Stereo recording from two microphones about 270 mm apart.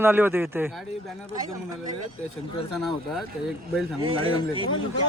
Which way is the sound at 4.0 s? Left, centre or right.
Centre.